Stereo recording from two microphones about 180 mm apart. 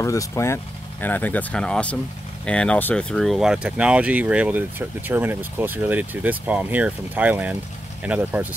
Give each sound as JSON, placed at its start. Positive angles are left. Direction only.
{"t": 0.0, "sound": "speech", "side_deg": 15}